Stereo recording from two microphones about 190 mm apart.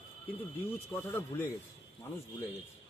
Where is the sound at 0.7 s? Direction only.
10° left (ahead or behind).